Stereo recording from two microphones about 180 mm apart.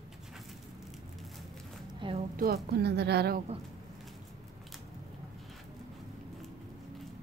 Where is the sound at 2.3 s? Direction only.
60° right (ahead or behind).